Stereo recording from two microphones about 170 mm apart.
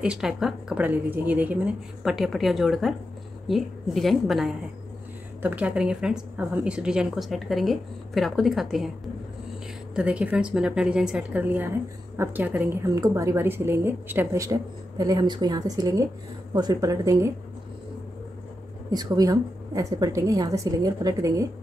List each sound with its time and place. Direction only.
0.0 s speech: 5° right (ahead or behind)
9.9 s a woman's voice: 5° right (ahead or behind)
18.9 s a woman's voice: 20° right (ahead or behind)